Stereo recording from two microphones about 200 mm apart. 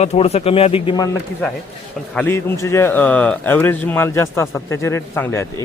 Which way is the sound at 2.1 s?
10° left (ahead or behind).